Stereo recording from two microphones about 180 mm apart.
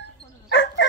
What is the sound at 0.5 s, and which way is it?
Dog, 70° left (ahead or behind).